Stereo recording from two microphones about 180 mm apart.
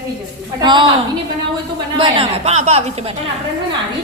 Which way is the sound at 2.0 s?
30° right (ahead or behind).